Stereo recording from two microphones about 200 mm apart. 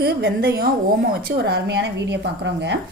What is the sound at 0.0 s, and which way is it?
A woman's voice, 50° right (ahead or behind).